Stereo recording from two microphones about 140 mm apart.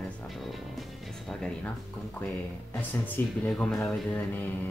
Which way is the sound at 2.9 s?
15° left (ahead or behind).